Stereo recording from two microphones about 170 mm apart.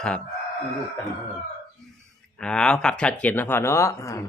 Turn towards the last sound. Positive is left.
turn(degrees=15)  # may be behind; listen again after turning